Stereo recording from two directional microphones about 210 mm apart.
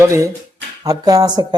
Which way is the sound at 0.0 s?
15° right (ahead or behind).